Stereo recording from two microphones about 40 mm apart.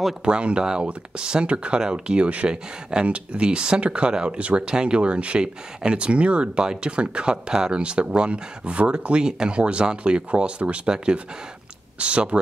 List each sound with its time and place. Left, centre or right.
0.2 s speech: right
6.6 s speech: centre
12.0 s speech: right